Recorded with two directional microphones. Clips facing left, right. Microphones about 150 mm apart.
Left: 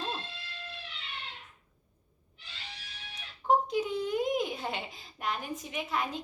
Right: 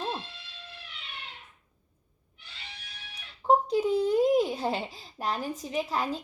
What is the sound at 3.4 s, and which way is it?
A child's voice, 30° right (ahead or behind).